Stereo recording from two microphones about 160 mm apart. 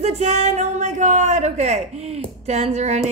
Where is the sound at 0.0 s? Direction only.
40° right (ahead or behind).